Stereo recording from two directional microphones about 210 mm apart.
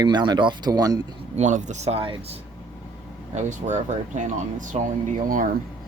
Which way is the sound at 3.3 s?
35° right (ahead or behind).